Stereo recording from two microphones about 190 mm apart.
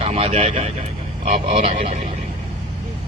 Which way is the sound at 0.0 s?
30° right (ahead or behind).